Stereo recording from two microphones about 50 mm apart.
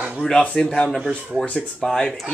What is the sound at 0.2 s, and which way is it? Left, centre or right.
Speech, centre.